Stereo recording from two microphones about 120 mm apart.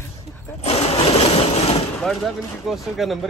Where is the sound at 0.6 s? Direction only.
60° left (ahead or behind).